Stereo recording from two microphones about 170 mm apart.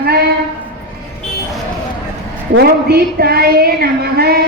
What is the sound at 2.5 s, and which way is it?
A woman's voice, 65° right (ahead or behind).